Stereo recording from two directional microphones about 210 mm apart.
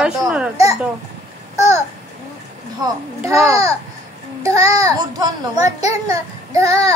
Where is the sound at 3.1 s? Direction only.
15° right (ahead or behind).